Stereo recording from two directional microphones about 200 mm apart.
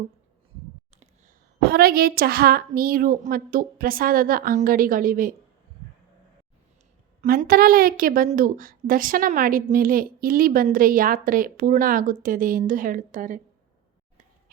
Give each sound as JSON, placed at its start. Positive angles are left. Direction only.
{"t": 1.6, "sound": "a woman's voice", "side_deg": -50}
{"t": 7.2, "sound": "a woman's voice", "side_deg": -45}